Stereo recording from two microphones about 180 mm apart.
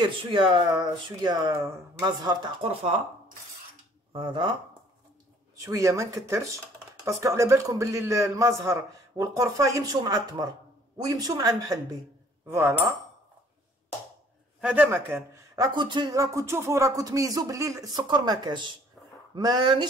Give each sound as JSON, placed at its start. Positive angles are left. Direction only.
{"t": 0.0, "sound": "speech", "side_deg": -25}
{"t": 4.1, "sound": "speech", "side_deg": -30}
{"t": 5.6, "sound": "a man's voice", "side_deg": -15}
{"t": 14.6, "sound": "a man's voice", "side_deg": -10}
{"t": 19.0, "sound": "a sound", "side_deg": 5}
{"t": 19.3, "sound": "speech", "side_deg": -25}